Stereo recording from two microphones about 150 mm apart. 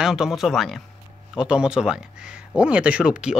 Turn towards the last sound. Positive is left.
turn(degrees=-5)  # may be behind; listen again after turning